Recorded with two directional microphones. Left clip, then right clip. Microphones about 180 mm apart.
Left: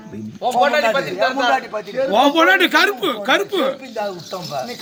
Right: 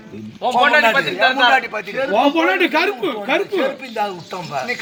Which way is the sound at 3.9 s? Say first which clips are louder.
Right 2 dB; 10° left (ahead or behind).